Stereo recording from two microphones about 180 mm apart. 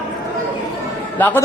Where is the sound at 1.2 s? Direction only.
10° left (ahead or behind).